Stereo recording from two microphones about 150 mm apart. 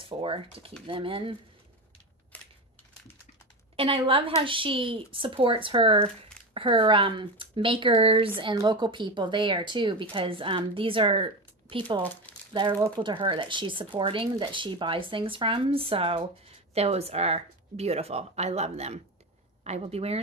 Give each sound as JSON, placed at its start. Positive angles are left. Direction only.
{"t": 0.0, "sound": "speech", "side_deg": -35}
{"t": 3.7, "sound": "a woman's voice", "side_deg": -40}
{"t": 12.5, "sound": "speech", "side_deg": -30}